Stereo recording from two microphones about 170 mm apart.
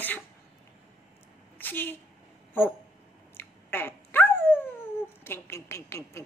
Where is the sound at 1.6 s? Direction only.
10° left (ahead or behind).